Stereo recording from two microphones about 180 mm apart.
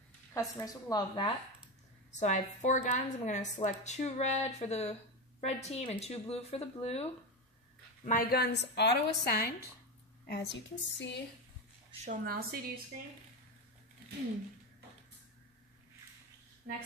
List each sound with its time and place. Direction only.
0.3 s a woman's voice: 15° left (ahead or behind)
2.1 s a woman's voice: 40° left (ahead or behind)
8.0 s a woman's voice: 50° left (ahead or behind); by 11.1 s 70° left (ahead or behind)
11.9 s a woman's voice: 40° right (ahead or behind)
12.3 s a woman's voice: 55° right (ahead or behind)